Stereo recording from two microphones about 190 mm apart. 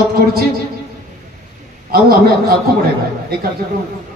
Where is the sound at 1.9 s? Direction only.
50° right (ahead or behind).